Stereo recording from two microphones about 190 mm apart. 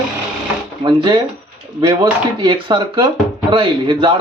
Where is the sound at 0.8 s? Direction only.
25° right (ahead or behind).